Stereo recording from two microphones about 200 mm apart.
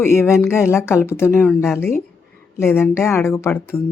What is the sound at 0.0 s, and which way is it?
Speech, 10° left (ahead or behind).